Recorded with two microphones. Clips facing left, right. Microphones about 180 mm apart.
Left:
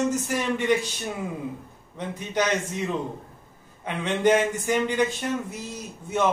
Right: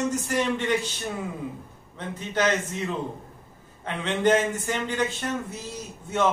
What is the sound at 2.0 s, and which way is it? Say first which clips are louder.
Speech: even; 15° left (ahead or behind).